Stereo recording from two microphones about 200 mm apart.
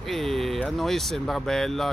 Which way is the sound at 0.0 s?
Centre (ahead or behind).